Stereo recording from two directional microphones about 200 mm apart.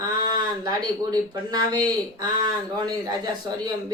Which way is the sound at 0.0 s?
20° right (ahead or behind).